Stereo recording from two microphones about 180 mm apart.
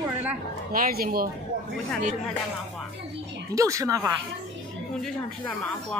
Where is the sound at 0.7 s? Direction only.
55° right (ahead or behind).